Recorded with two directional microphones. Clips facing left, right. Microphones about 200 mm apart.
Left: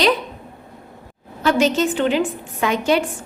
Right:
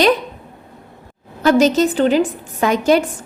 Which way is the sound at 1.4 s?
40° right (ahead or behind).